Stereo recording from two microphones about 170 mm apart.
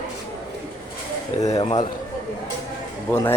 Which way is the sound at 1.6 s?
40° left (ahead or behind).